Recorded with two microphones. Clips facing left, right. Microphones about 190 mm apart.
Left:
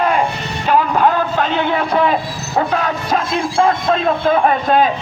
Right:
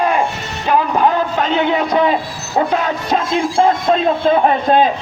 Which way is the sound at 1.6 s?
15° right (ahead or behind).